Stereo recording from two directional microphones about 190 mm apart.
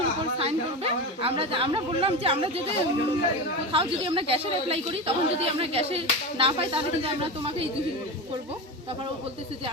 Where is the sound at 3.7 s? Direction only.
25° right (ahead or behind).